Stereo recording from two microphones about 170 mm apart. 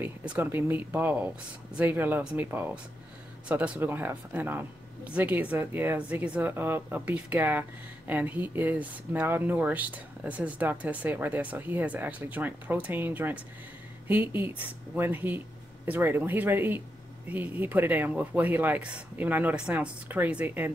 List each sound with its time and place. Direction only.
0.0 s speech: 10° right (ahead or behind)